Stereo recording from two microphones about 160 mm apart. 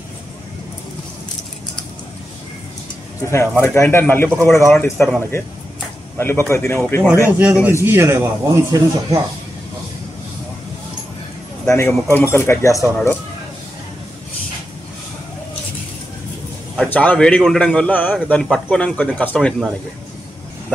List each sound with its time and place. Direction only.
3.3 s speech: 15° left (ahead or behind)
7.2 s speech: 10° right (ahead or behind)
11.6 s a man's voice: 15° left (ahead or behind)
16.7 s a man's voice: 5° left (ahead or behind)